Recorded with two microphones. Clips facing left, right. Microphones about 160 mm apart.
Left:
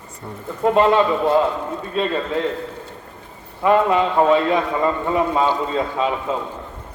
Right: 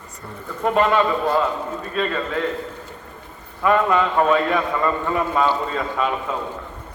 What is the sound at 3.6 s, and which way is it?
A man's voice, 25° left (ahead or behind).